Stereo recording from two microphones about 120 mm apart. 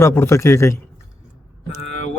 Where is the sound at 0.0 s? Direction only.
20° left (ahead or behind).